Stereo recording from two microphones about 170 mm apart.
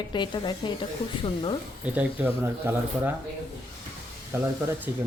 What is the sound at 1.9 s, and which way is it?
Speech, 10° right (ahead or behind).